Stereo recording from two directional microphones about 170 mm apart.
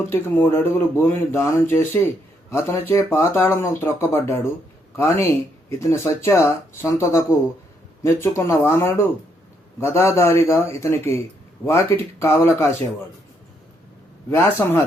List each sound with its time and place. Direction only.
0.1 s speech: 15° left (ahead or behind)
14.3 s a man's voice: 20° left (ahead or behind)